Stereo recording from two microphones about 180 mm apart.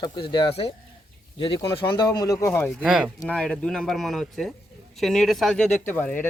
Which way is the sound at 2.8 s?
5° right (ahead or behind).